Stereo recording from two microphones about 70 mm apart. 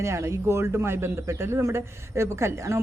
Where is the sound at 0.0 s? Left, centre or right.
Right.